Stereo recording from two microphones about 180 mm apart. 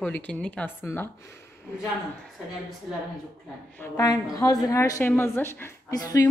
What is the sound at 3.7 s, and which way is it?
A woman's voice, 15° left (ahead or behind).